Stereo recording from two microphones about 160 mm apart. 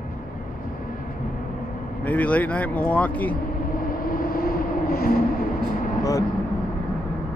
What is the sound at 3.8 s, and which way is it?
Vehicle, 65° left (ahead or behind).